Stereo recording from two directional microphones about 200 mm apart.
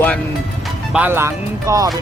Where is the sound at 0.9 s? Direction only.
10° right (ahead or behind).